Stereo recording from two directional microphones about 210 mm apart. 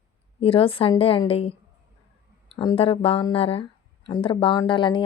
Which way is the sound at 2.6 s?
25° left (ahead or behind).